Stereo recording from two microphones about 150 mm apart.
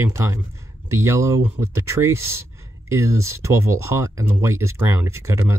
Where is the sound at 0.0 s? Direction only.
20° right (ahead or behind).